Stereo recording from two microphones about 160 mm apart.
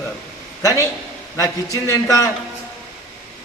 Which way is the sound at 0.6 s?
20° left (ahead or behind).